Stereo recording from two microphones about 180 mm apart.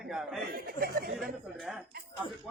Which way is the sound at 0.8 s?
55° right (ahead or behind).